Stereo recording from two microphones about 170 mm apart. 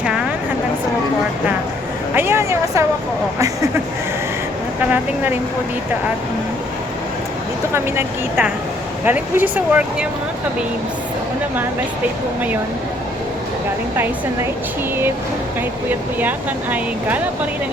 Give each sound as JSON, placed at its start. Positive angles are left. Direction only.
{"t": 0.0, "sound": "vehicle", "side_deg": -5}
{"t": 2.1, "sound": "a sound", "side_deg": -15}
{"t": 3.3, "sound": "speech", "side_deg": -20}
{"t": 4.8, "sound": "speech", "side_deg": -10}
{"t": 7.7, "sound": "speech", "side_deg": -10}